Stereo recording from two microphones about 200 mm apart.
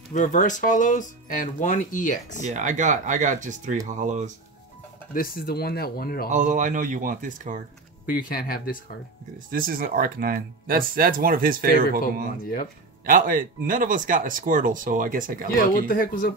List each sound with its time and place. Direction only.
0.1 s speech: 40° left (ahead or behind)
2.4 s speech: 35° right (ahead or behind)
5.1 s speech: 45° left (ahead or behind)
6.3 s speech: 40° right (ahead or behind)
8.1 s speech: 45° left (ahead or behind)
9.5 s speech: 45° right (ahead or behind)
12.0 s speech: 45° left (ahead or behind)
13.0 s speech: 45° right (ahead or behind)
15.7 s speech: 45° left (ahead or behind)